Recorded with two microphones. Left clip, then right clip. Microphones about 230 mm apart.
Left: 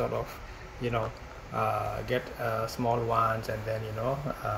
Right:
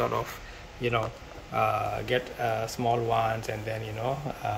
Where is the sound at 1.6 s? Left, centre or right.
Centre.